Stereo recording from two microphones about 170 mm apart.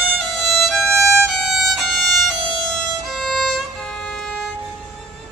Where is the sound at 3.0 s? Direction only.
Centre (ahead or behind).